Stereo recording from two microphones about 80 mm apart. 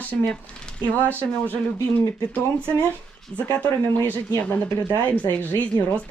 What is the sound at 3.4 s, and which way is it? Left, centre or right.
Speech, left.